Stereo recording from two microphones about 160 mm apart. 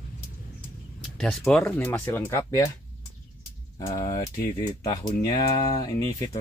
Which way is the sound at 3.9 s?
20° left (ahead or behind).